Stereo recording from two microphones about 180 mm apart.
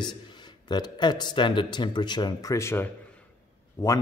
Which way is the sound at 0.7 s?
25° left (ahead or behind).